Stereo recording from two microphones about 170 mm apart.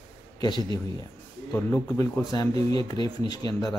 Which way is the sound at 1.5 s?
15° left (ahead or behind).